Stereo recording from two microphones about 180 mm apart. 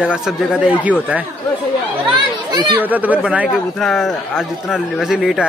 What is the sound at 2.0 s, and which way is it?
Chatter, 25° right (ahead or behind).